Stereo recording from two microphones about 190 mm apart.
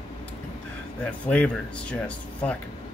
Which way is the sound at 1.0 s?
5° left (ahead or behind).